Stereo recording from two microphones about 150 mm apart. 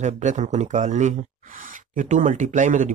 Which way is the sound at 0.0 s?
55° right (ahead or behind).